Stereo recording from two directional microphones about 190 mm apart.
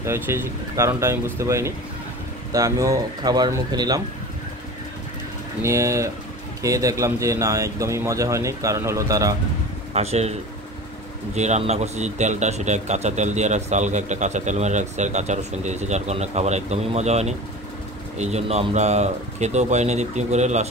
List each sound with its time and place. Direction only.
0.0 s speech: 15° right (ahead or behind)
5.6 s speech: 15° right (ahead or behind)
9.9 s speech: 35° right (ahead or behind)
11.3 s speech: 35° right (ahead or behind)